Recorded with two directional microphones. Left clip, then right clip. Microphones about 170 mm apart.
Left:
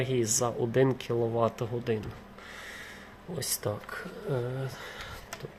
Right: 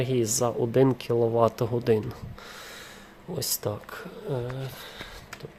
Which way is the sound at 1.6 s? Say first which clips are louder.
Right 7 dB; 40° right (ahead or behind).